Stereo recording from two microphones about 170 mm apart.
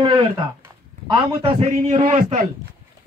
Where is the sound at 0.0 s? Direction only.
30° right (ahead or behind).